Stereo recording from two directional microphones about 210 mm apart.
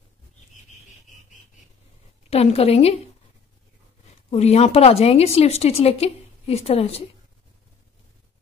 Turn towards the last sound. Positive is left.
turn(degrees=30)  # may be behind; listen again after turning